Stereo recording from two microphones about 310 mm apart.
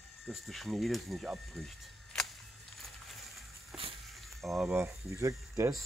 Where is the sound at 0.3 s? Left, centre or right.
Centre.